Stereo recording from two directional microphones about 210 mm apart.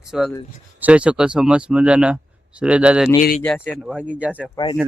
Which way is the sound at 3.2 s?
40° left (ahead or behind).